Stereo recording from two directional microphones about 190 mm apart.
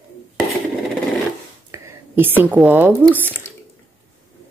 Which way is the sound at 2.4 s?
5° right (ahead or behind).